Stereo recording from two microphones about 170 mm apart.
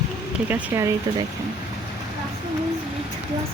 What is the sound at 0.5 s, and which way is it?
Speech, 15° right (ahead or behind).